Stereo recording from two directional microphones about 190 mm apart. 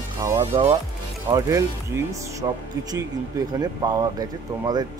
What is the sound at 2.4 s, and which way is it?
Speech, 20° right (ahead or behind).